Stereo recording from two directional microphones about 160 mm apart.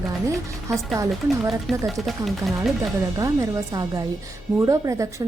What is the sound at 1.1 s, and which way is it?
Speech, centre (ahead or behind).